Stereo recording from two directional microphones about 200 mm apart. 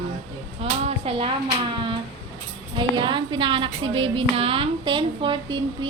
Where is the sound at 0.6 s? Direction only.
30° right (ahead or behind).